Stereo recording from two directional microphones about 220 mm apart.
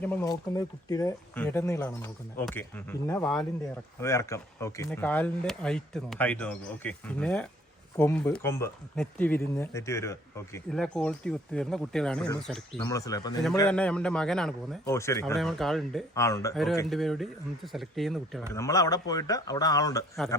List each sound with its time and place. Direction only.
0.0 s speech: 10° left (ahead or behind)
12.7 s speech: 15° left (ahead or behind)
13.7 s speech: 5° left (ahead or behind)
14.9 s speech: 15° left (ahead or behind)
15.4 s speech: centre (ahead or behind)
16.1 s speech: 15° left (ahead or behind)
16.9 s speech: centre (ahead or behind)
18.5 s speech: 15° left (ahead or behind)